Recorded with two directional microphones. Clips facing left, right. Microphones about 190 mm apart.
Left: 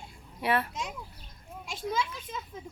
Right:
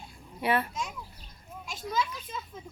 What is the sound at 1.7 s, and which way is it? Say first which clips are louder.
Children playing: even; 30° left (ahead or behind).